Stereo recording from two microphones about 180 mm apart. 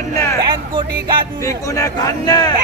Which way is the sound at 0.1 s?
15° left (ahead or behind).